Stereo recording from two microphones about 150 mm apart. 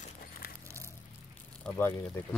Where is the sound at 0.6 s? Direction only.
20° right (ahead or behind).